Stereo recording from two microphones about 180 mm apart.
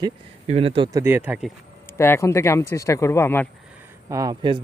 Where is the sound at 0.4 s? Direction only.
35° right (ahead or behind).